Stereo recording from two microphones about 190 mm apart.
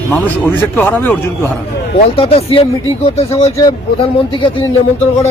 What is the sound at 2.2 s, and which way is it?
Speech, 30° left (ahead or behind).